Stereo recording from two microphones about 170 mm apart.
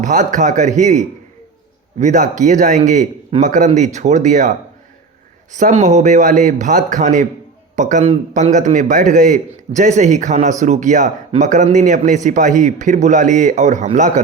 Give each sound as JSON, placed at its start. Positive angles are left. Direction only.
{"t": 0.0, "sound": "speech", "side_deg": -50}
{"t": 5.5, "sound": "speech", "side_deg": -45}